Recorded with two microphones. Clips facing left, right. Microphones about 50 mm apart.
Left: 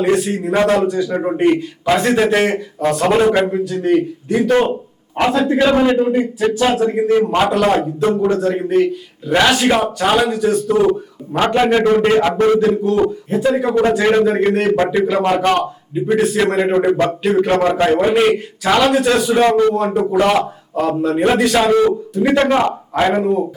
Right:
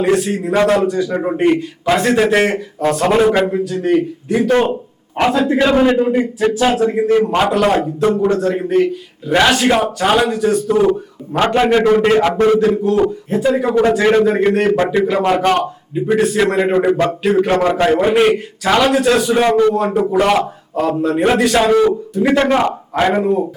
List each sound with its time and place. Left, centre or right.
0.0 s a man's voice: centre
11.5 s a man's voice: centre
11.9 s a man's voice: centre